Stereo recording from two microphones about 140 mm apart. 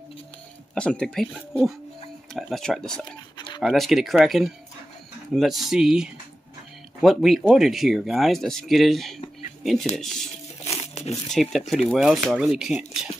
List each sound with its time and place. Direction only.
0.7 s speech: 5° left (ahead or behind)
3.3 s a sound: 30° left (ahead or behind)
3.6 s speech: centre (ahead or behind)
11.2 s speech: centre (ahead or behind)